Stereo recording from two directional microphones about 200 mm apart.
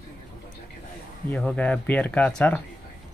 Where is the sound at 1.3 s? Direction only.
5° left (ahead or behind).